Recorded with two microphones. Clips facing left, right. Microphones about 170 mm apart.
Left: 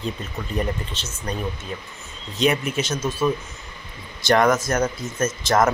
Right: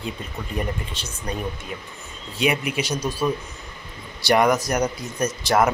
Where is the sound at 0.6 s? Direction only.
10° right (ahead or behind).